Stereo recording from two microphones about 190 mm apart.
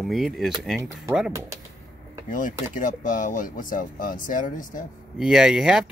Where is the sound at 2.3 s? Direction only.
45° left (ahead or behind).